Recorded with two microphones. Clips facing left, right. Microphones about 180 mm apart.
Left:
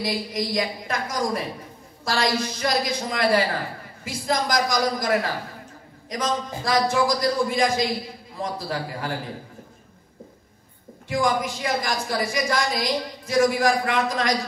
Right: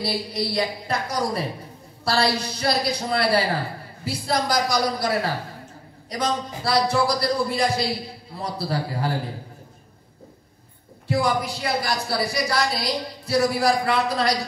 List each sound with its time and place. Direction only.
0.0 s a woman's voice: 35° right (ahead or behind)
11.1 s a woman's voice: 35° right (ahead or behind)